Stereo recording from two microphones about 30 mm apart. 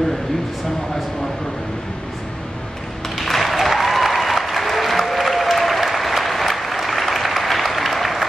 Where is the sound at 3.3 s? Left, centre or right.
Centre.